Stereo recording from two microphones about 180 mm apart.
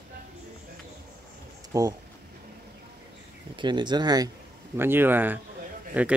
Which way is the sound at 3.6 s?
25° right (ahead or behind).